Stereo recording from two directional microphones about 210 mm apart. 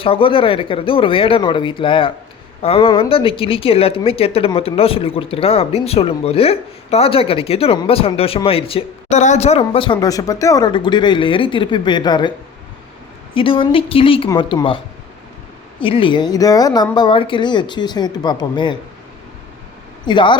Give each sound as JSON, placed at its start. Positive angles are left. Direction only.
{"t": 0.0, "sound": "speech", "side_deg": 25}
{"t": 13.3, "sound": "speech", "side_deg": 25}
{"t": 15.8, "sound": "speech", "side_deg": 25}
{"t": 20.1, "sound": "speech", "side_deg": 20}